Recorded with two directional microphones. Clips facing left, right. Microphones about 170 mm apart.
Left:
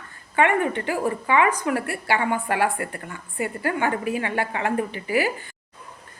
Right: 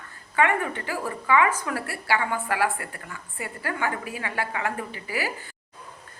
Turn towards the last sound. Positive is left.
turn(degrees=20)  # may be behind; listen again after turning